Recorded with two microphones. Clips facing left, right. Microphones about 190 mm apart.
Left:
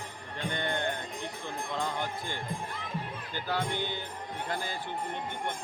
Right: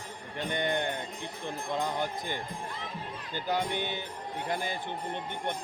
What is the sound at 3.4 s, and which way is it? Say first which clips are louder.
Speech: right 2 dB; 15° right (ahead or behind).